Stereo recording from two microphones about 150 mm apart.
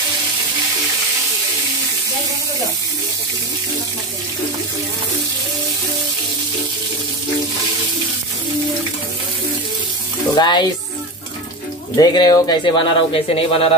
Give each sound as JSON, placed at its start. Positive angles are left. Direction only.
{"t": 10.3, "sound": "frying", "side_deg": 30}
{"t": 12.0, "sound": "speech", "side_deg": 25}